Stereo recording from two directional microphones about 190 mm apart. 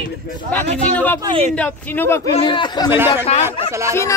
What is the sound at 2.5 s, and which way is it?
A man's voice, 25° left (ahead or behind).